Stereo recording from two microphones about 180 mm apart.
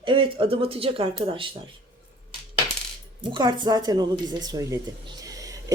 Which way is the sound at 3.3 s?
25° right (ahead or behind).